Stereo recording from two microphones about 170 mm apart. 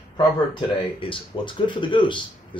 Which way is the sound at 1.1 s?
30° left (ahead or behind).